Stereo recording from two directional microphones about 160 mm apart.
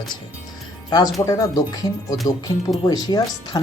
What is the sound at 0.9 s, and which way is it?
Speech, 20° left (ahead or behind).